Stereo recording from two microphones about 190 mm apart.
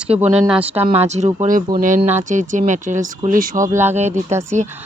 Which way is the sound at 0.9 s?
35° right (ahead or behind).